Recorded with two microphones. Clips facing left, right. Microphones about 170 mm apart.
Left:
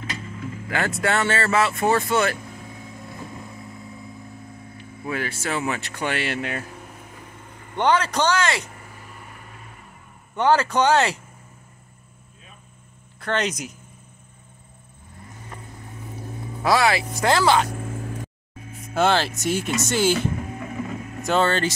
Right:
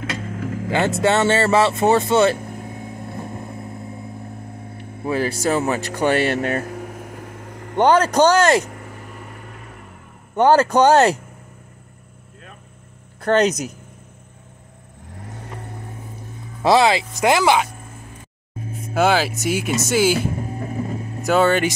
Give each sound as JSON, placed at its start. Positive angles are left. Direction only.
{"t": 0.0, "sound": "vehicle", "side_deg": -75}
{"t": 0.7, "sound": "speech", "side_deg": -25}
{"t": 2.4, "sound": "vehicle", "side_deg": -50}
{"t": 5.0, "sound": "speech", "side_deg": -35}
{"t": 6.7, "sound": "vehicle", "side_deg": -65}
{"t": 7.7, "sound": "speech", "side_deg": -45}
{"t": 10.3, "sound": "speech", "side_deg": -45}
{"t": 13.2, "sound": "speech", "side_deg": -40}
{"t": 15.1, "sound": "vehicle", "side_deg": -70}
{"t": 16.6, "sound": "speech", "side_deg": -20}
{"t": 18.9, "sound": "speech", "side_deg": -5}
{"t": 20.3, "sound": "vehicle", "side_deg": -35}
{"t": 21.3, "sound": "speech", "side_deg": -10}